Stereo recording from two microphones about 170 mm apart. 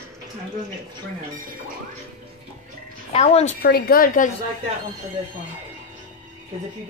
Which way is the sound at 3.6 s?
60° left (ahead or behind).